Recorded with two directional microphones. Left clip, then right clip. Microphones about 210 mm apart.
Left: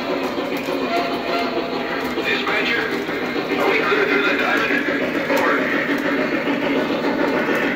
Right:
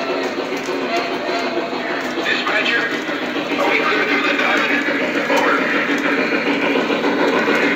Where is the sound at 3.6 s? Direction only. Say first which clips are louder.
Right 1 dB; 5° left (ahead or behind).